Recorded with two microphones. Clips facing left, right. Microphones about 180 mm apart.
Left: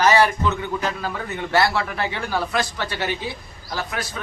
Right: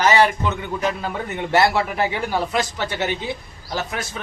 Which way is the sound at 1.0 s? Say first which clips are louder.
Right 2 dB; 25° right (ahead or behind).